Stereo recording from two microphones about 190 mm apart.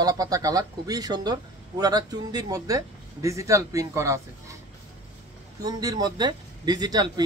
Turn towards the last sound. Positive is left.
turn(degrees=-20)  # may be behind; listen again after turning